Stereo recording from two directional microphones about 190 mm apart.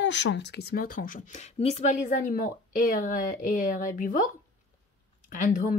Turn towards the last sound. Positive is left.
turn(degrees=45)  # may be behind; listen again after turning